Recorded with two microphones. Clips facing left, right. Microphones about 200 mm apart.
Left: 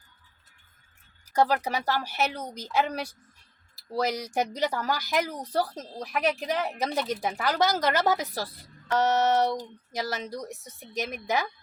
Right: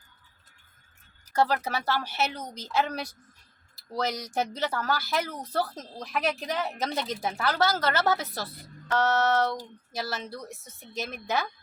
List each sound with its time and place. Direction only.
1.3 s speech: 15° left (ahead or behind)